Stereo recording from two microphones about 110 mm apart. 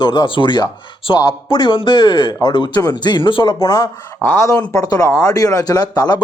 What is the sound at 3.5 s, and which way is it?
Speech, 30° left (ahead or behind).